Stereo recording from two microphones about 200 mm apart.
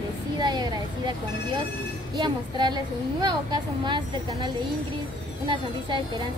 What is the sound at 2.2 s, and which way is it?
A woman's voice, 20° right (ahead or behind).